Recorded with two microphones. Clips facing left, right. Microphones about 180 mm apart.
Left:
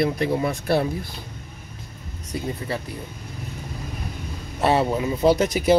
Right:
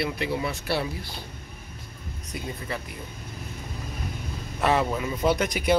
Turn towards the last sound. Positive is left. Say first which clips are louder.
# left 5 dB
turn(degrees=35)  # may be behind; listen again after turning